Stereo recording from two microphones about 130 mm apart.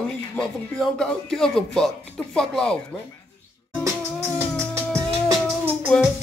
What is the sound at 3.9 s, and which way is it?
Music, 20° right (ahead or behind).